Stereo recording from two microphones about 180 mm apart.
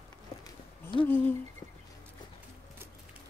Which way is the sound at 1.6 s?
35° left (ahead or behind).